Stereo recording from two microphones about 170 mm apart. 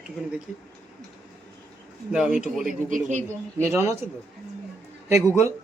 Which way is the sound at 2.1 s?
5° right (ahead or behind).